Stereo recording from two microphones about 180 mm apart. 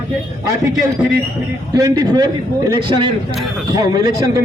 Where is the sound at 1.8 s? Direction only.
20° right (ahead or behind).